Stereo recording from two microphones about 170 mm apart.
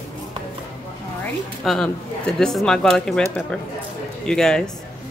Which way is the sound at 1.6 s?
5° left (ahead or behind).